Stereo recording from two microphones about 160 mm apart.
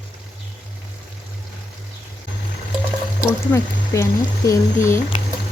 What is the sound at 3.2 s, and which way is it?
Speech, 20° left (ahead or behind).